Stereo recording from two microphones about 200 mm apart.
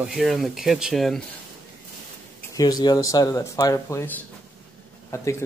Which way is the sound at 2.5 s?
20° left (ahead or behind).